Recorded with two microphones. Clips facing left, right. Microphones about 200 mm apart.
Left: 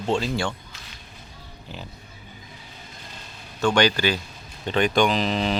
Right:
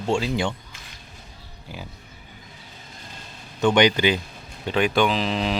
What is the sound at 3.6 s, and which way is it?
Speech, 20° right (ahead or behind).